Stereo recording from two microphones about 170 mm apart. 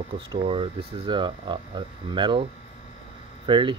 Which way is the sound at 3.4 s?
25° right (ahead or behind).